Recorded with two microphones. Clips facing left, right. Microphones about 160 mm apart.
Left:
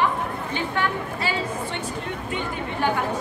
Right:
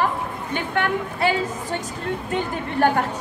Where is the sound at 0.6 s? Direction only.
55° right (ahead or behind).